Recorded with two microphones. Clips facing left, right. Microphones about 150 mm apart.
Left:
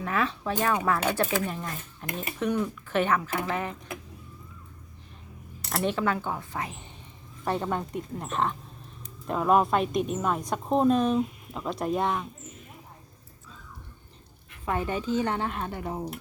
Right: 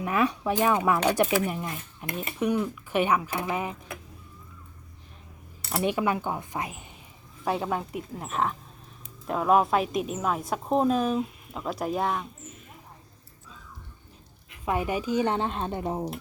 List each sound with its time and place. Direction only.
0.0 s speech: 15° right (ahead or behind)
5.7 s a woman's voice: 10° right (ahead or behind)
14.6 s a woman's voice: 10° right (ahead or behind)